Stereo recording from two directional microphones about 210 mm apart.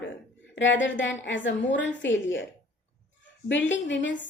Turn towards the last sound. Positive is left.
turn(degrees=60)  # may be behind; listen again after turning